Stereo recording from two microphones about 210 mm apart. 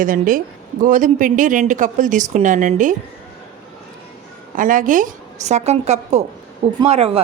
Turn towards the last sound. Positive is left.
turn(degrees=-30)  # may be behind; listen again after turning